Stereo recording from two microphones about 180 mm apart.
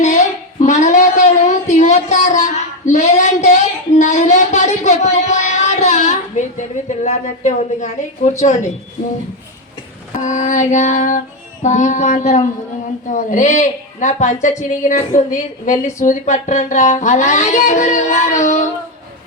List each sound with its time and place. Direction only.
0.0 s a sound: 40° left (ahead or behind)
6.6 s speech: 40° left (ahead or behind)
10.2 s a woman's voice: 45° left (ahead or behind)
15.1 s a woman's voice: 45° left (ahead or behind)